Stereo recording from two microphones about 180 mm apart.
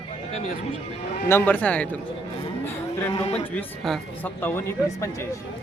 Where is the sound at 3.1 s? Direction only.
35° left (ahead or behind).